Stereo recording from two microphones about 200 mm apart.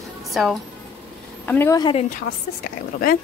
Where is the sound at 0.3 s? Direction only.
Centre (ahead or behind); by 2.0 s 20° left (ahead or behind).